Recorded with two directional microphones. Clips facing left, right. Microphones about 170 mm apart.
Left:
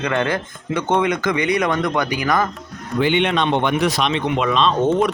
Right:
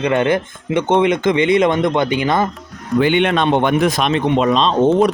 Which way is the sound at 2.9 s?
50° right (ahead or behind).